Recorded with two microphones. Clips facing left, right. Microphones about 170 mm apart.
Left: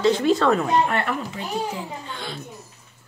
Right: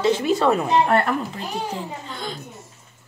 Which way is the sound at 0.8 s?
40° right (ahead or behind).